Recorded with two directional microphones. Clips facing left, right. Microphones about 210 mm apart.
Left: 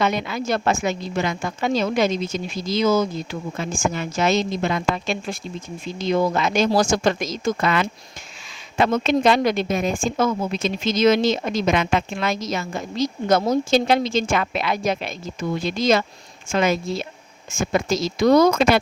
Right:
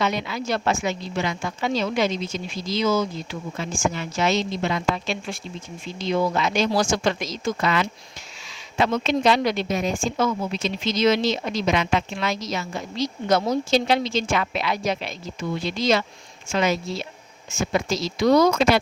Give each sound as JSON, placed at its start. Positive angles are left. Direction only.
{"t": 0.0, "sound": "speech", "side_deg": 50}